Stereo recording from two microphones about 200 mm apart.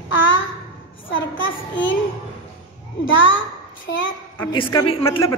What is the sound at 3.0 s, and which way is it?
Speech, 75° left (ahead or behind).